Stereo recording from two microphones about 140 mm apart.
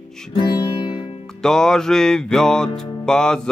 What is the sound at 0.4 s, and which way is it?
Music, 30° left (ahead or behind).